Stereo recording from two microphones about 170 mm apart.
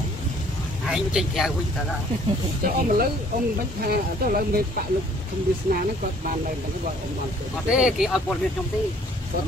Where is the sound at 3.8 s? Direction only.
60° right (ahead or behind).